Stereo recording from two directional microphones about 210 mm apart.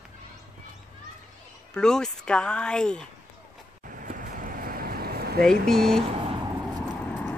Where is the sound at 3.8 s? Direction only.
40° right (ahead or behind).